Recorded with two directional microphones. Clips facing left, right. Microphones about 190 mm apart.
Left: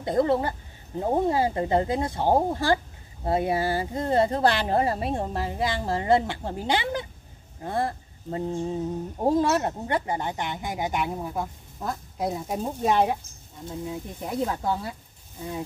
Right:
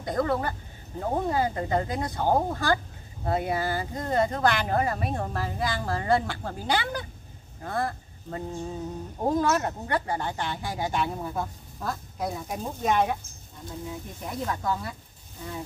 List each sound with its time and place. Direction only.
0.0 s speech: 25° left (ahead or behind)